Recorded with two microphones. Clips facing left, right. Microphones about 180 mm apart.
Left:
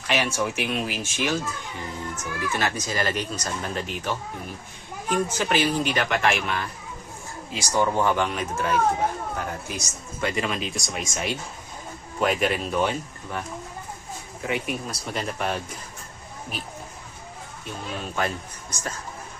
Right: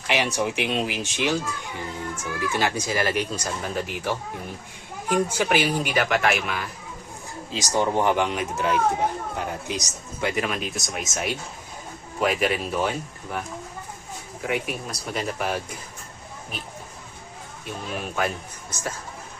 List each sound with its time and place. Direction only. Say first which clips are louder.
0.1 s speech: right 1 dB; 15° right (ahead or behind)
5.1 s speech: right 2 dB; 10° right (ahead or behind)
7.5 s speech: even; 20° right (ahead or behind)
10.2 s speech: right 1 dB; 5° right (ahead or behind)
14.4 s speech: even; 5° right (ahead or behind)
17.9 s speech: right 1 dB; 10° right (ahead or behind)